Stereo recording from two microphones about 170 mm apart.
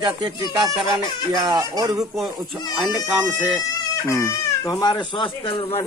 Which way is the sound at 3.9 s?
15° left (ahead or behind).